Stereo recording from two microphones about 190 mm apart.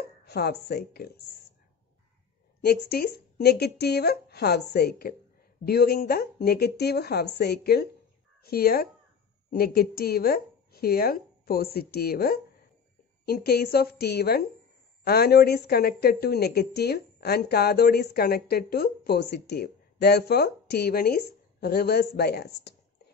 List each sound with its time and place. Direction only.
0.2 s speech: 60° left (ahead or behind)
2.6 s a woman's voice: 55° left (ahead or behind)